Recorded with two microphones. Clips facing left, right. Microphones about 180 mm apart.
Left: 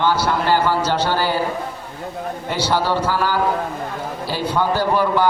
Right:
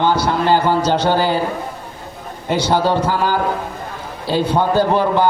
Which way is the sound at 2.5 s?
20° right (ahead or behind).